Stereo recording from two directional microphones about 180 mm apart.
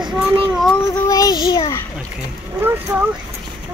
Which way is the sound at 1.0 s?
20° left (ahead or behind).